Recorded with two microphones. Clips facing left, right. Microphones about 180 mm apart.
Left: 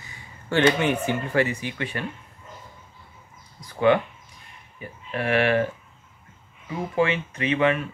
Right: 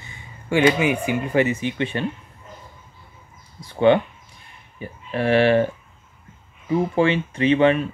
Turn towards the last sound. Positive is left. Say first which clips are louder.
# right 6 dB
turn(degrees=-30)  # may be behind; listen again after turning